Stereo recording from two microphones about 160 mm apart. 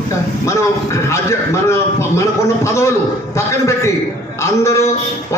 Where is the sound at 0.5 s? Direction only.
20° left (ahead or behind).